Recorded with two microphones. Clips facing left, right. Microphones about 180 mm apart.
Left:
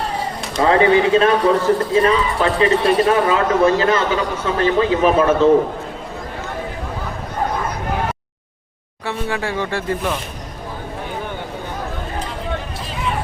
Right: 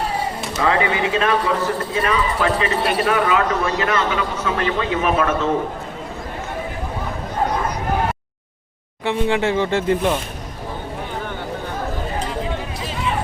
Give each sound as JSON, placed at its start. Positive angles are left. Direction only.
{"t": 0.7, "sound": "a man's voice", "side_deg": 30}
{"t": 9.0, "sound": "speech", "side_deg": -20}